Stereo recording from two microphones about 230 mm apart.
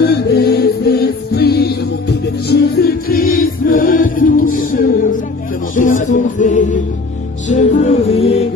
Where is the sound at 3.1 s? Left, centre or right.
Left.